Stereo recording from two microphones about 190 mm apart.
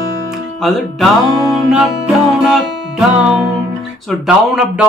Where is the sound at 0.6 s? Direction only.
Centre (ahead or behind).